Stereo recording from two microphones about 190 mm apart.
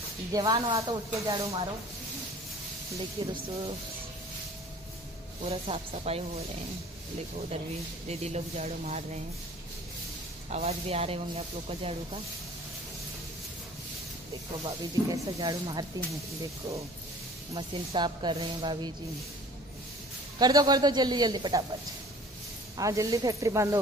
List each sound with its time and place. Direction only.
0.3 s speech: 20° right (ahead or behind)
3.2 s speech: 25° right (ahead or behind)
5.4 s speech: 30° right (ahead or behind)
8.1 s speech: 35° right (ahead or behind)
10.5 s speech: 35° right (ahead or behind)
14.6 s speech: 20° right (ahead or behind)
17.6 s speech: 25° right (ahead or behind)
20.3 s speech: 20° right (ahead or behind)
22.8 s speech: 20° right (ahead or behind)